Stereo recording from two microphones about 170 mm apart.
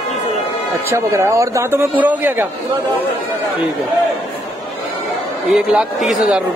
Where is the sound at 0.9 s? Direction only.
15° right (ahead or behind).